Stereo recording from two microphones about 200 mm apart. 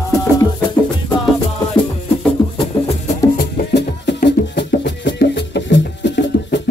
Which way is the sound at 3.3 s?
55° left (ahead or behind).